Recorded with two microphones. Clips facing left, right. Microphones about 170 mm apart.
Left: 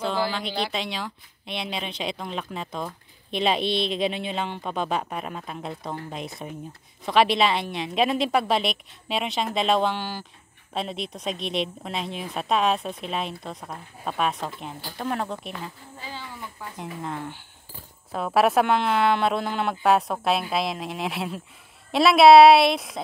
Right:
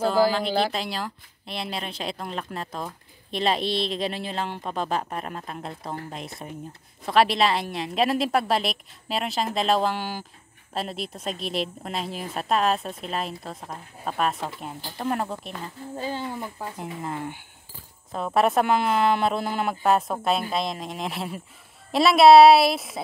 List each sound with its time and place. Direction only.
0.5 s speech: 45° right (ahead or behind)
0.7 s speech: centre (ahead or behind)
16.0 s speech: 45° right (ahead or behind)
16.7 s speech: 5° right (ahead or behind)